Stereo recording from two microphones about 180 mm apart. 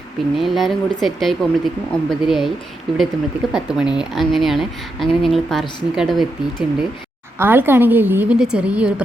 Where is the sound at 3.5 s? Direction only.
5° right (ahead or behind).